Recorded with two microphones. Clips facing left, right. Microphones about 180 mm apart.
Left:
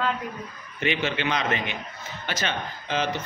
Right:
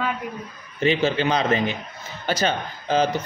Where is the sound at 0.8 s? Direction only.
35° right (ahead or behind).